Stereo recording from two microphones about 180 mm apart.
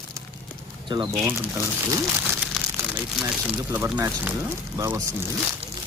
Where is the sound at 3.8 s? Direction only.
10° right (ahead or behind).